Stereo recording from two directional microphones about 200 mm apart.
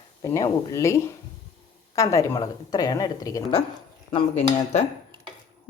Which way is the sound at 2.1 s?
15° left (ahead or behind).